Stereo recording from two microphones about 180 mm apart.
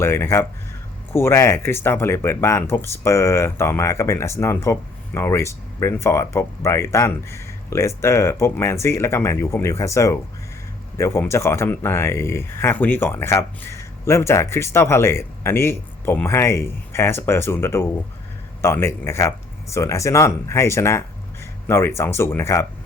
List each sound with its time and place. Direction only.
0.0 s speech: 15° left (ahead or behind)